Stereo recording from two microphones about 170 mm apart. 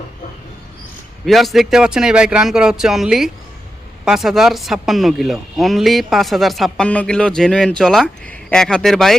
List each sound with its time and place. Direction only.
1.2 s speech: centre (ahead or behind)